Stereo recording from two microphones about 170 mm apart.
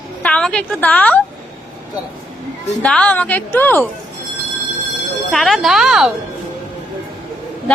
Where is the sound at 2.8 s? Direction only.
5° left (ahead or behind).